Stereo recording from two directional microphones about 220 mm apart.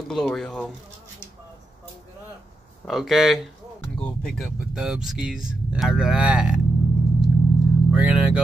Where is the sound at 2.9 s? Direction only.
Centre (ahead or behind).